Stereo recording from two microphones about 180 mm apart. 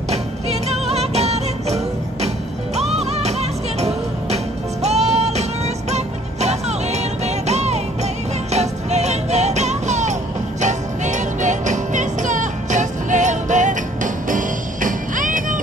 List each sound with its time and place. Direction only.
0.1 s music: 35° right (ahead or behind)